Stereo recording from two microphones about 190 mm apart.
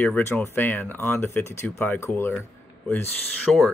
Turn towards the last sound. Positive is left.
turn(degrees=5)  # may be behind; listen again after turning